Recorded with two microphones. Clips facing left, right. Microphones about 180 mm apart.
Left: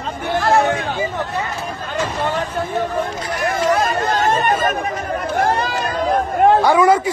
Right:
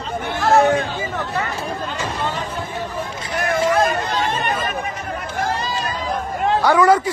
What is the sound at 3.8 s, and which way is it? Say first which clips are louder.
Chatter: left 3 dB; 50° left (ahead or behind).